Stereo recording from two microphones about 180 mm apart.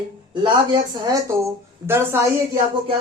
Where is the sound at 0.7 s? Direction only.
20° right (ahead or behind).